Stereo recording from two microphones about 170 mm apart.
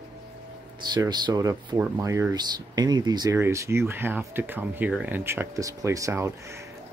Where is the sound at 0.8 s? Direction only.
25° right (ahead or behind).